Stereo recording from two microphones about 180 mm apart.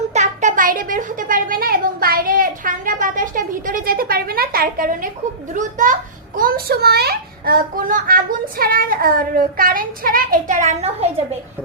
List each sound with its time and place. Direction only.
0.1 s a child's voice: 40° right (ahead or behind)